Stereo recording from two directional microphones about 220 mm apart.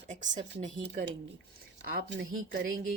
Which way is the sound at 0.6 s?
35° right (ahead or behind).